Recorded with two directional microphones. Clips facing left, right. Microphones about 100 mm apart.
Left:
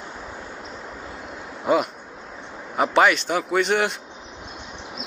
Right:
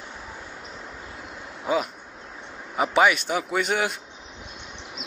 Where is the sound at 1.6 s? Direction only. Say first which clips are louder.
Left 4 dB; centre (ahead or behind).